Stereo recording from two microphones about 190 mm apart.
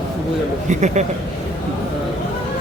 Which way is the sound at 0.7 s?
40° right (ahead or behind).